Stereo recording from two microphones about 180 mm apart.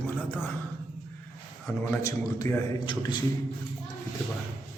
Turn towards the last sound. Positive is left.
turn(degrees=25)  # may be behind; listen again after turning